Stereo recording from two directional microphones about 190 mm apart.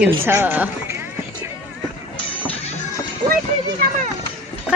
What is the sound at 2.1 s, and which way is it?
Music, 30° left (ahead or behind).